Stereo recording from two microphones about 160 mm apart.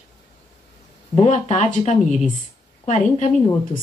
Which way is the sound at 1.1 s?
45° left (ahead or behind).